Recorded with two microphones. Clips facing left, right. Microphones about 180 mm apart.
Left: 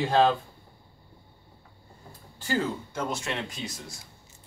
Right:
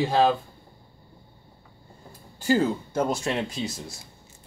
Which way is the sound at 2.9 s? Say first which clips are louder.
Right 6 dB; 35° right (ahead or behind).